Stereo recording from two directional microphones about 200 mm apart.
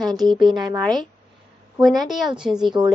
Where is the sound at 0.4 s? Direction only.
20° right (ahead or behind).